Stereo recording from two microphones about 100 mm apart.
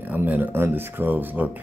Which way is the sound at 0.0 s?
15° right (ahead or behind).